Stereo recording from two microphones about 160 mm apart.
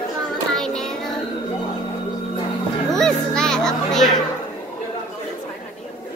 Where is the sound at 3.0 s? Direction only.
5° left (ahead or behind).